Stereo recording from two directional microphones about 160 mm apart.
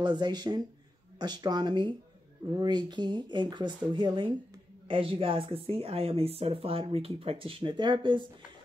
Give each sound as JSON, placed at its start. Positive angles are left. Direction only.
{"t": 0.0, "sound": "speech", "side_deg": -25}